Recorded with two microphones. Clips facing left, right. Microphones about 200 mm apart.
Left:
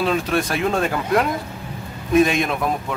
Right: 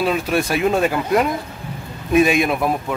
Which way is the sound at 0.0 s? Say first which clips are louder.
Right 1 dB; 5° right (ahead or behind).